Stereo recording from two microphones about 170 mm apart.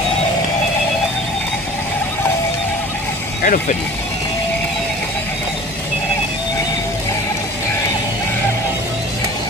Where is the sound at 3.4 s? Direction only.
50° left (ahead or behind).